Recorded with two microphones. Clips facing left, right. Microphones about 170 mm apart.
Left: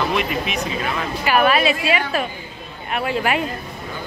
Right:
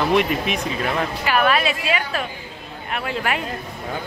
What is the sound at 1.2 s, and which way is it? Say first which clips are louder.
A woman's voice: left 4 dB; 10° left (ahead or behind).